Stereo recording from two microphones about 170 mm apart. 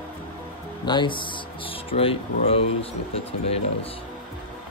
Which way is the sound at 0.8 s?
25° left (ahead or behind).